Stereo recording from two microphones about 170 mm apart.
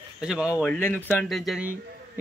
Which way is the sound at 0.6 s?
10° left (ahead or behind).